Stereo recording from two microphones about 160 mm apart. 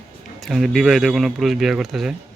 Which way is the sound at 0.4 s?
Centre (ahead or behind).